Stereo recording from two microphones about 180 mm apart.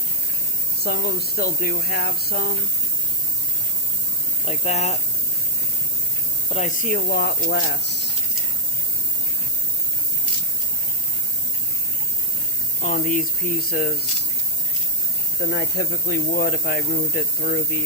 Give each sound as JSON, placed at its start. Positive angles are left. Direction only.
{"t": 0.8, "sound": "speech", "side_deg": 60}
{"t": 4.4, "sound": "speech", "side_deg": 35}
{"t": 6.5, "sound": "speech", "side_deg": 40}
{"t": 12.8, "sound": "speech", "side_deg": 45}
{"t": 15.4, "sound": "speech", "side_deg": 65}